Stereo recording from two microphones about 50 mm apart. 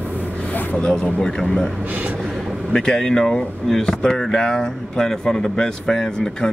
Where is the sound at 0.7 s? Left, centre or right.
Left.